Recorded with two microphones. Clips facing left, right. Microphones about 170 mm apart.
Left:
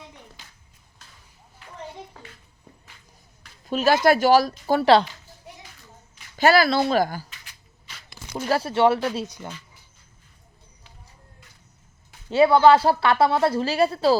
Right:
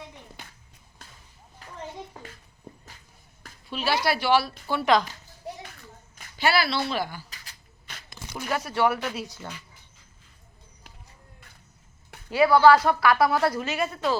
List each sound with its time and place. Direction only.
0.4 s music: 60° right (ahead or behind)
1.6 s children playing: 40° right (ahead or behind)
3.7 s speech: 45° left (ahead or behind)
6.3 s speech: 45° left (ahead or behind)
7.3 s a sound: 40° right (ahead or behind)
8.4 s a woman's voice: 30° left (ahead or behind)
12.3 s a woman's voice: 25° left (ahead or behind)